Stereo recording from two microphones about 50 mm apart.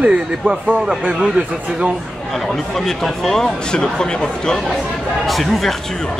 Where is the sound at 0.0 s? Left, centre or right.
Right.